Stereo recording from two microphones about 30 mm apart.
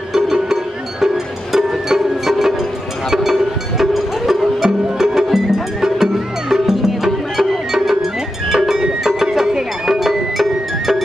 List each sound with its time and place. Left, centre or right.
0.1 s music: centre
2.2 s music: centre